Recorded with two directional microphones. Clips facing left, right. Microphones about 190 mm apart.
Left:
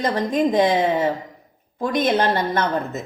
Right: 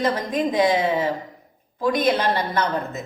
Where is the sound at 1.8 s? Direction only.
50° left (ahead or behind).